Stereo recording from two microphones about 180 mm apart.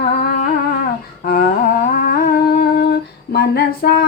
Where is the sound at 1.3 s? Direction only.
55° left (ahead or behind).